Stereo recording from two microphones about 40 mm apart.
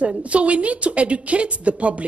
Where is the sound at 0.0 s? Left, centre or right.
Right.